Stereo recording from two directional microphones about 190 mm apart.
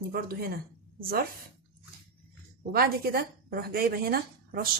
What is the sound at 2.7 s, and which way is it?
A woman's voice, 50° right (ahead or behind).